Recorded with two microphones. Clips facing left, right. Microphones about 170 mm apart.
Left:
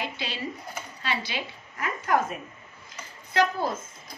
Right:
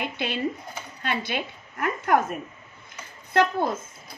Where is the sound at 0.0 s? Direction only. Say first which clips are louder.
Right 5 dB; 55° right (ahead or behind).